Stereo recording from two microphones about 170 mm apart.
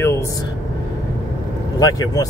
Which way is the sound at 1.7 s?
20° left (ahead or behind).